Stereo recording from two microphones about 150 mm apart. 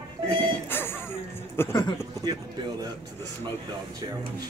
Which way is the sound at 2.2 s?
25° right (ahead or behind).